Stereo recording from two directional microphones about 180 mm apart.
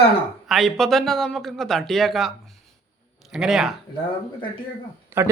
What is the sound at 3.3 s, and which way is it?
Speech, centre (ahead or behind).